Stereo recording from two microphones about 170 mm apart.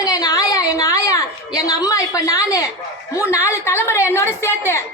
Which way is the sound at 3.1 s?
15° left (ahead or behind).